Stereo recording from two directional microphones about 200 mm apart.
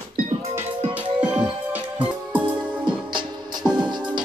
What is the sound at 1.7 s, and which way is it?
Music, 5° right (ahead or behind).